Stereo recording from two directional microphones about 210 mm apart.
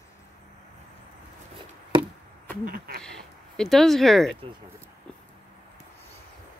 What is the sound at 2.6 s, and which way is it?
Speech, 45° right (ahead or behind).